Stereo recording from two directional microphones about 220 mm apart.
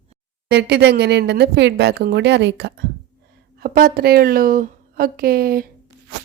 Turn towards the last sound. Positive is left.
turn(degrees=-40)  # may be behind; listen again after turning